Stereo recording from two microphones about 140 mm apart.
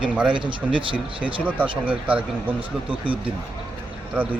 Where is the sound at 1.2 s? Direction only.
10° right (ahead or behind).